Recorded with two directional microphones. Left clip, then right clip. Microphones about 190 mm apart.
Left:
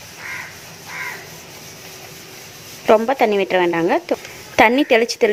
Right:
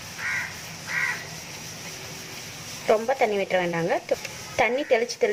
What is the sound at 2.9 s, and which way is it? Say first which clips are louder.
A woman's voice: left 8 dB; 45° left (ahead or behind).